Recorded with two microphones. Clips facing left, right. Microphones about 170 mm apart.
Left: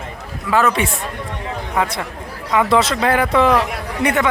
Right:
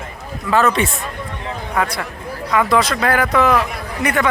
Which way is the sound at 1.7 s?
25° left (ahead or behind).